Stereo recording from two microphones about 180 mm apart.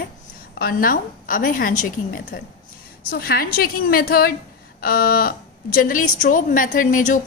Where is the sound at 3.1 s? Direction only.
55° left (ahead or behind).